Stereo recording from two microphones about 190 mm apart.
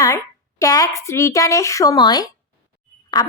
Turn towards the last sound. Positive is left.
turn(degrees=20)  # may be behind; listen again after turning